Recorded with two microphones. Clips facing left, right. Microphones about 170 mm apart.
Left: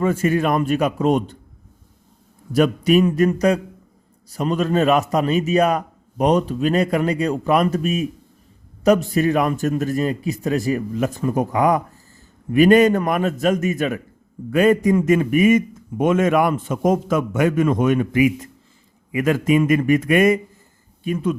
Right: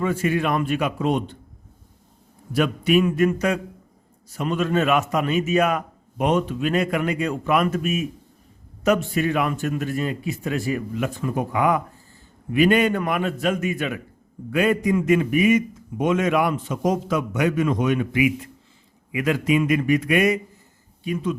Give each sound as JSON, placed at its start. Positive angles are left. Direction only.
{"t": 0.0, "sound": "a man's voice", "side_deg": 45}
{"t": 2.5, "sound": "a man's voice", "side_deg": 40}